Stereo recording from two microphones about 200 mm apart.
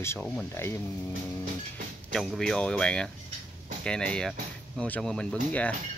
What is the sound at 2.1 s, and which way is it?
Speech, centre (ahead or behind).